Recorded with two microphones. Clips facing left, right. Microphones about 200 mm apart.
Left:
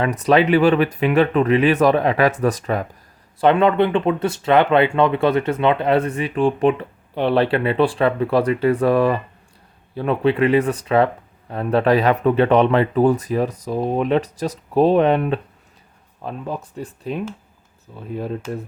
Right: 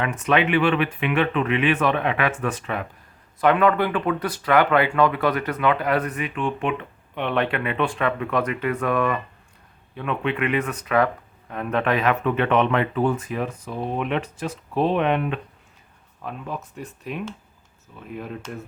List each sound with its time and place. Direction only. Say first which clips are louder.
0.0 s speech: left 5 dB; 35° left (ahead or behind)
3.4 s speech: left 4 dB; 25° left (ahead or behind)